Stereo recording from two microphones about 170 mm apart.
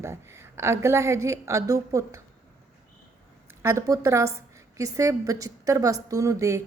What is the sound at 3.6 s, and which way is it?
A woman's voice, 15° right (ahead or behind).